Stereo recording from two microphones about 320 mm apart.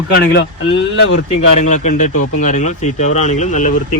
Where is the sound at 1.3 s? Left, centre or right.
Left.